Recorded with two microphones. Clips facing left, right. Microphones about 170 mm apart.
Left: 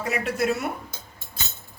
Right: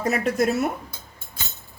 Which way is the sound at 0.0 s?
40° right (ahead or behind).